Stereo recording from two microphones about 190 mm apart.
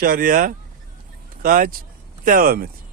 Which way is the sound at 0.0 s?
50° right (ahead or behind).